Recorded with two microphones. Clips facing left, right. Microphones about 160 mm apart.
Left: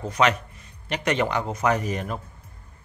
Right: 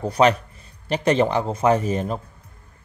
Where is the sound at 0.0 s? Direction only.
35° right (ahead or behind).